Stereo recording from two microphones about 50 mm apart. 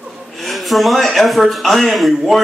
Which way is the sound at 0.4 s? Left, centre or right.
Centre.